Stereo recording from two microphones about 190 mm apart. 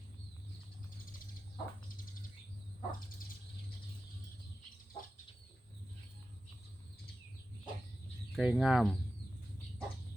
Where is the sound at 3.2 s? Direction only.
45° left (ahead or behind).